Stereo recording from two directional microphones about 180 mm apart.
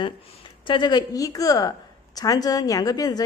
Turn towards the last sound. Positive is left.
turn(degrees=20)  # may be behind; listen again after turning